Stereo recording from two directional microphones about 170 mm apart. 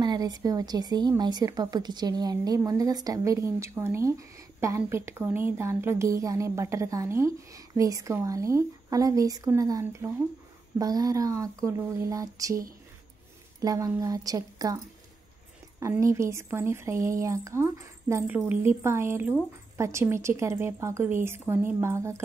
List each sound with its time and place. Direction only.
0.0 s a woman's voice: 25° right (ahead or behind)
15.8 s a woman's voice: 15° right (ahead or behind)